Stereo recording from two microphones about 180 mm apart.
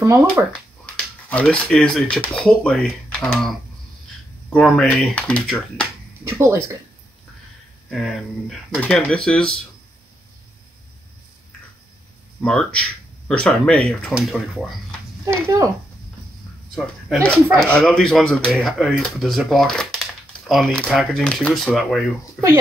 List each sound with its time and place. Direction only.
0.0 s speech: 15° right (ahead or behind)
0.8 s speech: 5° left (ahead or behind)
6.2 s speech: 15° right (ahead or behind)
7.9 s speech: centre (ahead or behind)
12.4 s speech: 5° left (ahead or behind)
15.4 s speech: 15° right (ahead or behind)
16.7 s speech: centre (ahead or behind)